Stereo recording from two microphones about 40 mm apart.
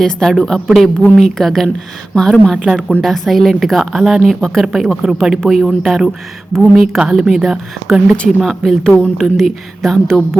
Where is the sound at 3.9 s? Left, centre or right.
Centre.